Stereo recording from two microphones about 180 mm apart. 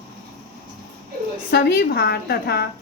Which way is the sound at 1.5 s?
65° left (ahead or behind).